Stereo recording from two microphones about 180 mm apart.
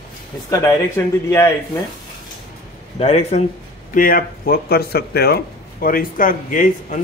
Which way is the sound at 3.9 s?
50° left (ahead or behind).